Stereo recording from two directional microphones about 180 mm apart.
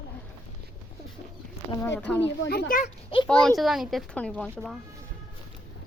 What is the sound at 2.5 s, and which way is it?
Speech, 55° left (ahead or behind).